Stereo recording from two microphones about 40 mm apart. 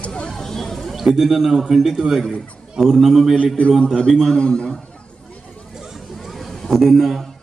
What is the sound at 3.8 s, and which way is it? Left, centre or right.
Speech, centre.